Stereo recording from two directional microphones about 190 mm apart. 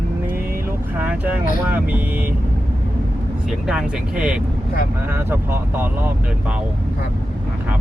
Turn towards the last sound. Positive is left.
turn(degrees=-10)  # may be behind; listen again after turning